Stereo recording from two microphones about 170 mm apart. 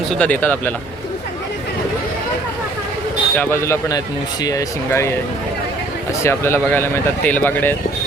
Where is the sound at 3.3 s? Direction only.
10° left (ahead or behind).